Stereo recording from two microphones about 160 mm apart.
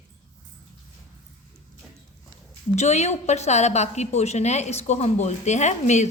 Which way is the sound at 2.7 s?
45° left (ahead or behind).